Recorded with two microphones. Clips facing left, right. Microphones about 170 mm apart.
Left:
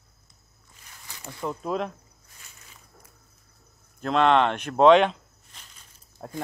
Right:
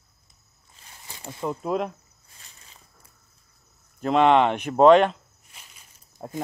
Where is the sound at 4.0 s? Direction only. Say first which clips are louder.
Right 2 dB; 10° right (ahead or behind).